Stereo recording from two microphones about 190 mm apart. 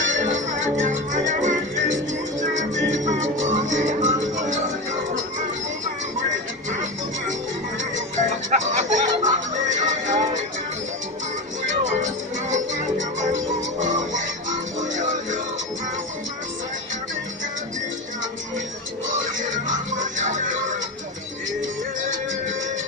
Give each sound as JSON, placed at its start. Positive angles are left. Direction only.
{"t": 0.6, "sound": "salsa music", "side_deg": -40}
{"t": 2.5, "sound": "music", "side_deg": -40}
{"t": 8.5, "sound": "music", "side_deg": -40}
{"t": 12.0, "sound": "music", "side_deg": -40}
{"t": 13.8, "sound": "music", "side_deg": -40}
{"t": 19.7, "sound": "music", "side_deg": -40}